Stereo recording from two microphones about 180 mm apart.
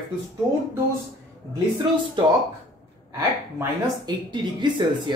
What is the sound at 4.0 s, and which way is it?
Speech, 25° right (ahead or behind).